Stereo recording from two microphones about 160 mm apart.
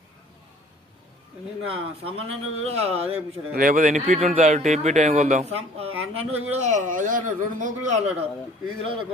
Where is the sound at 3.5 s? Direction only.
60° right (ahead or behind).